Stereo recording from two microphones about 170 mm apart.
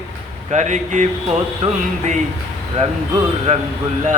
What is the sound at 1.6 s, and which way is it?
Speech, 40° right (ahead or behind).